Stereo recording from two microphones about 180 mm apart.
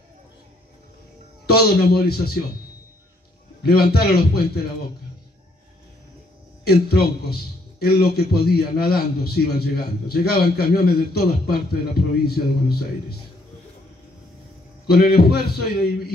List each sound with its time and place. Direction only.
1.4 s a man's voice: 60° left (ahead or behind)
3.6 s a man's voice: 60° left (ahead or behind)
6.6 s a man's voice: 60° left (ahead or behind)
14.9 s a man's voice: 60° left (ahead or behind)